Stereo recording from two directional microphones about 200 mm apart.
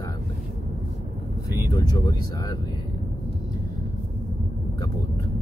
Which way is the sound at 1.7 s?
20° left (ahead or behind).